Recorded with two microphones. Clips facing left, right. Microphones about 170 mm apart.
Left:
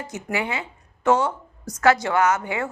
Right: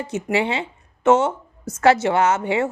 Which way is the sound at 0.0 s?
25° right (ahead or behind).